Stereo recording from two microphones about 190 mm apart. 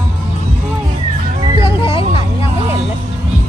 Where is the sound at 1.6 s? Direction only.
25° left (ahead or behind).